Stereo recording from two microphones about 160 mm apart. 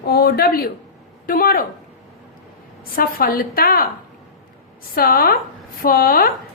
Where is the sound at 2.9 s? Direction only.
65° left (ahead or behind).